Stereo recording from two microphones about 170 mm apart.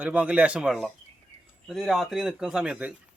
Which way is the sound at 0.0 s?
5° right (ahead or behind).